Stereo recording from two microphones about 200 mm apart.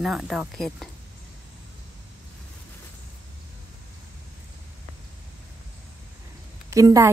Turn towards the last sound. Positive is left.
turn(degrees=-15)  # may be behind; listen again after turning